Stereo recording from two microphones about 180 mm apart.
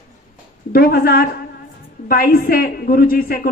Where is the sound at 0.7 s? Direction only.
55° left (ahead or behind).